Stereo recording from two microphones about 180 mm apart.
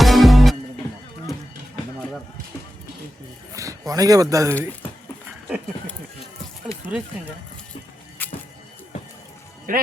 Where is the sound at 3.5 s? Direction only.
20° right (ahead or behind).